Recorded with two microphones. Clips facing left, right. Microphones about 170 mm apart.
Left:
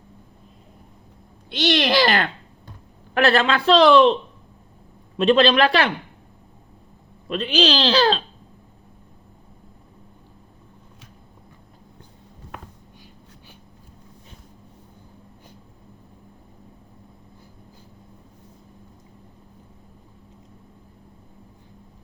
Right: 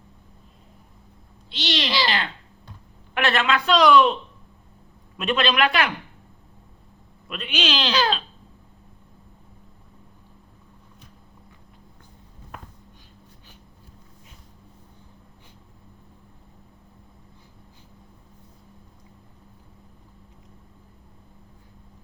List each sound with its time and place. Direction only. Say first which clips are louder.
1.5 s speech: left 7 dB; 50° left (ahead or behind)
3.2 s speech: left 4 dB; 35° left (ahead or behind)
5.1 s speech: left 7 dB; 30° left (ahead or behind)
7.3 s speech: left 7 dB; 30° left (ahead or behind)